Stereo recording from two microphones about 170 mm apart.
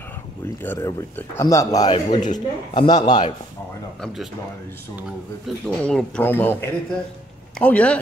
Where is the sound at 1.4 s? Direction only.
20° left (ahead or behind).